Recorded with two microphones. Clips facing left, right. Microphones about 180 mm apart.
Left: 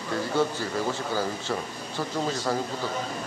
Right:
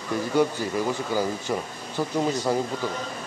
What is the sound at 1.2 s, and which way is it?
Speech, 15° right (ahead or behind).